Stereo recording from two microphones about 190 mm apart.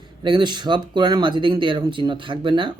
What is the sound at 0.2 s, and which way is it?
Speech, 25° right (ahead or behind).